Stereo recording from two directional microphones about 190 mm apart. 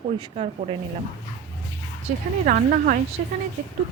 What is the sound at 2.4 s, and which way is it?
Speech, 45° right (ahead or behind).